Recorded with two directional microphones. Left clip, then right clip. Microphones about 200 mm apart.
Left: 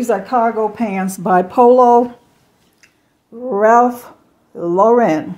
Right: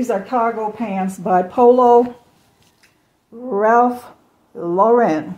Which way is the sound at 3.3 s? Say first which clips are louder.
Left 3 dB; 30° left (ahead or behind).